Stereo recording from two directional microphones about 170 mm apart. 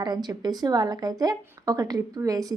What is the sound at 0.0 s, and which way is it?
A woman's voice, 25° right (ahead or behind).